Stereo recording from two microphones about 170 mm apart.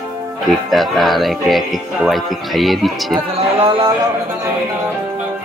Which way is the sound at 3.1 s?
30° right (ahead or behind).